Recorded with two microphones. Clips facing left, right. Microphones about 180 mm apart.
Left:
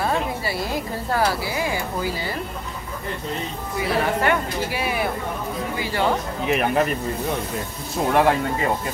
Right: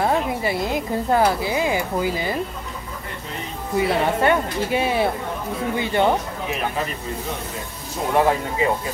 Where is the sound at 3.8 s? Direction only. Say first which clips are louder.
Right 3 dB; 25° right (ahead or behind).